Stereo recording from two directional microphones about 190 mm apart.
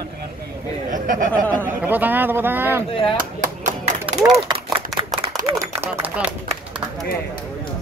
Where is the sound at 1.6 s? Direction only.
10° right (ahead or behind).